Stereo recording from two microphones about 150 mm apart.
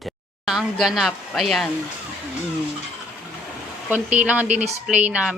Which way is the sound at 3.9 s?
10° right (ahead or behind).